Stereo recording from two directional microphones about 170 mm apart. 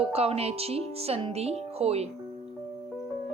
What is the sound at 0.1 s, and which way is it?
A woman's voice, 35° right (ahead or behind).